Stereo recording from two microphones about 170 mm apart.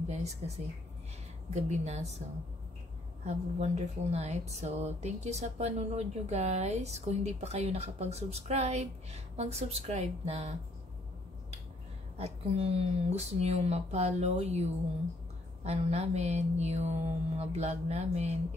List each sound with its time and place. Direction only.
1.5 s speech: 40° right (ahead or behind)
3.3 s speech: 40° right (ahead or behind)
12.2 s speech: 35° right (ahead or behind)